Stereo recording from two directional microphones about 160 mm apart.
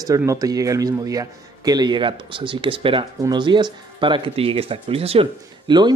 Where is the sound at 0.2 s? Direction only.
20° right (ahead or behind).